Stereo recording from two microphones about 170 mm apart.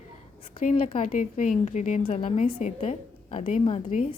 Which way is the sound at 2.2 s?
40° left (ahead or behind).